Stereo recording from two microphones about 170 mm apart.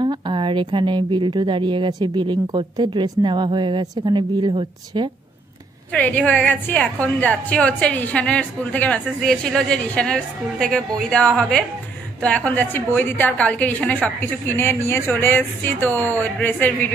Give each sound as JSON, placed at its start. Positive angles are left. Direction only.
{"t": 0.0, "sound": "speech", "side_deg": -30}
{"t": 5.9, "sound": "a woman's voice", "side_deg": 10}